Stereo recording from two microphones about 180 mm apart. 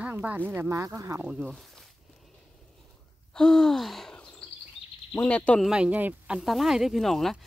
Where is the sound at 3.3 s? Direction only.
5° left (ahead or behind).